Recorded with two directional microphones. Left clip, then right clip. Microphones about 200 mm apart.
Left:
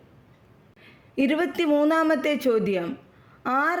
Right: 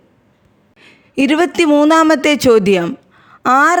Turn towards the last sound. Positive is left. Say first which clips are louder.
# right 13 dB
turn(degrees=-35)  # may be behind; listen again after turning